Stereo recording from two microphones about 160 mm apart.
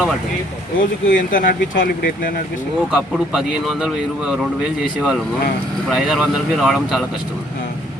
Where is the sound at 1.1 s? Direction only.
60° left (ahead or behind).